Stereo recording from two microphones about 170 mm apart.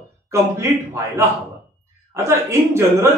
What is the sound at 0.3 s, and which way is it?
A man's voice, 15° right (ahead or behind).